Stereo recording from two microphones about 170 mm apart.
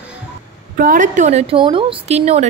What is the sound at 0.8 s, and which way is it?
A woman's voice, 50° right (ahead or behind).